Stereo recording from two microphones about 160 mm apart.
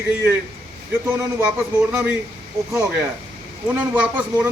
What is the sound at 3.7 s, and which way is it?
Speech, 10° right (ahead or behind).